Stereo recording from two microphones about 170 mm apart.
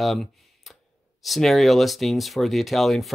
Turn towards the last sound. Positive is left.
turn(degrees=0)  # may be behind; listen again after turning